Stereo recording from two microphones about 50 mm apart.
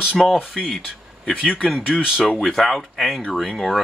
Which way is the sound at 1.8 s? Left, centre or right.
Centre.